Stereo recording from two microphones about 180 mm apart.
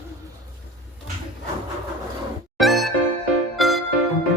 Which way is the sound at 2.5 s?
Centre (ahead or behind).